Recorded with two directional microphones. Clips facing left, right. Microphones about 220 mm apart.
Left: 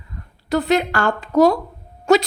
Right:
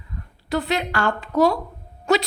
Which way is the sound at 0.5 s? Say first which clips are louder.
Left 5 dB; 45° left (ahead or behind).